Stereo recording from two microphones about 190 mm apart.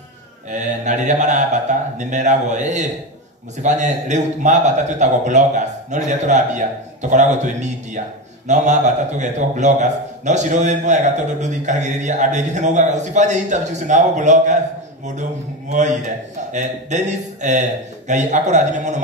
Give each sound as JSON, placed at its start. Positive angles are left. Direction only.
{"t": 0.5, "sound": "a man's voice", "side_deg": -40}
{"t": 15.7, "sound": "a man's voice", "side_deg": -40}